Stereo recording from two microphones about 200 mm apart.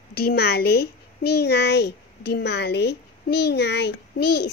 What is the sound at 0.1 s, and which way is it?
A child's voice, 50° left (ahead or behind).